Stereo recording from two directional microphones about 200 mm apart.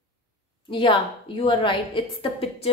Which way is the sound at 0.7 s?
25° left (ahead or behind).